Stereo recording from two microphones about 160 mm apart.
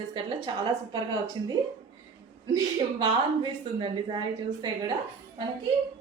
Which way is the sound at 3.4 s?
30° right (ahead or behind).